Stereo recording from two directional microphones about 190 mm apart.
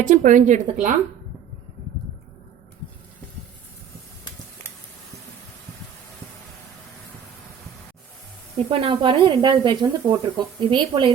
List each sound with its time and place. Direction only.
0.0 s a woman's voice: 40° right (ahead or behind)
8.5 s speech: 30° right (ahead or behind)